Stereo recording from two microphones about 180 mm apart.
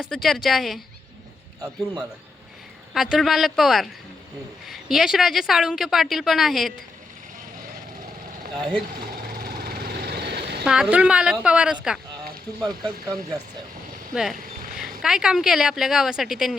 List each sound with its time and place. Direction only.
0.0 s a woman's voice: centre (ahead or behind)
1.6 s a man's voice: 20° right (ahead or behind)
2.9 s a woman's voice: centre (ahead or behind)
9.4 s vehicle: 55° right (ahead or behind)
10.7 s a woman's voice: 5° right (ahead or behind)
14.1 s a woman's voice: centre (ahead or behind)